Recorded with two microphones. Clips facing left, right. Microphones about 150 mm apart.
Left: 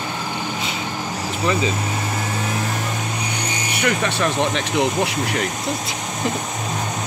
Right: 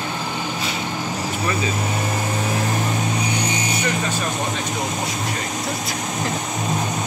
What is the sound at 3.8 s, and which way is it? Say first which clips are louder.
Speech: left 3 dB; 75° left (ahead or behind).